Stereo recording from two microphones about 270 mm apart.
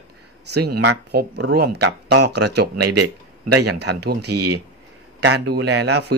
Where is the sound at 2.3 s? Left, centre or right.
Right.